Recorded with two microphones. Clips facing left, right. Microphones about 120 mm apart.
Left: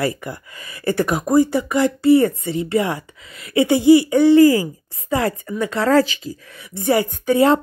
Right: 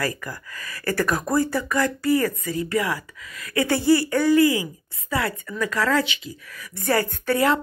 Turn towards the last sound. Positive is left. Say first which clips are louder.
# left 5 dB
turn(degrees=15)  # may be behind; listen again after turning